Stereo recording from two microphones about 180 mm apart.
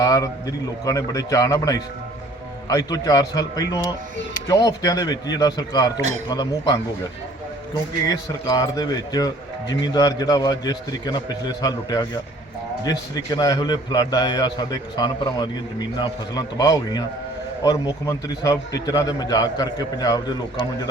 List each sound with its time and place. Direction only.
0.0 s a man's voice: 20° left (ahead or behind)
8.0 s a man's voice: 20° left (ahead or behind)